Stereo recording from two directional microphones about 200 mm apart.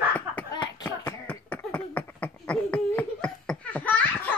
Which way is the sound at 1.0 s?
10° left (ahead or behind).